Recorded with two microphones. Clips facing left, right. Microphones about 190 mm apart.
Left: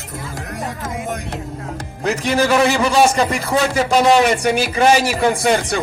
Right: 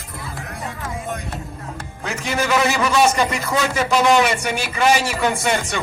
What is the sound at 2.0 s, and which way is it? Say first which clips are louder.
A man's voice: left 6 dB; 35° left (ahead or behind).